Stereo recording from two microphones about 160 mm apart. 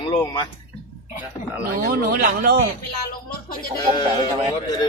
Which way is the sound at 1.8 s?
65° right (ahead or behind).